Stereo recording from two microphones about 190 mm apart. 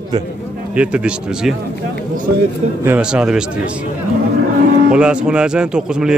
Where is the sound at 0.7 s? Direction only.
5° right (ahead or behind).